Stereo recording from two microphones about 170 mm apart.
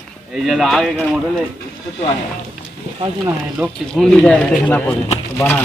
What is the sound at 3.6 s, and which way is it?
Speech, 10° right (ahead or behind).